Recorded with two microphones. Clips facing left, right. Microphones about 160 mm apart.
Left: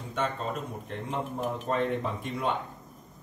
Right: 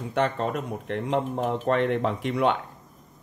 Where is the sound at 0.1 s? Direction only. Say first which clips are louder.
Right 6 dB; 70° right (ahead or behind).